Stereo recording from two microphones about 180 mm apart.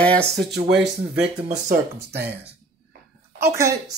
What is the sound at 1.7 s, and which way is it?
Speech, 65° right (ahead or behind).